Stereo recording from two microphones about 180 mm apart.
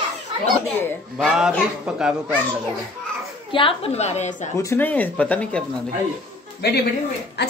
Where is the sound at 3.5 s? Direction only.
30° left (ahead or behind).